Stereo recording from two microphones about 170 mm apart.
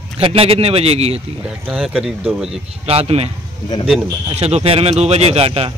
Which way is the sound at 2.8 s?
35° right (ahead or behind).